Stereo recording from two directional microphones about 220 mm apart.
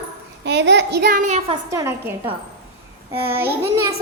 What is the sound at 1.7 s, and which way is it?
Child singing, 15° right (ahead or behind).